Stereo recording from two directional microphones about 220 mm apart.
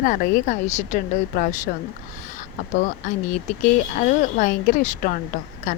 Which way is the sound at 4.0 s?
35° left (ahead or behind).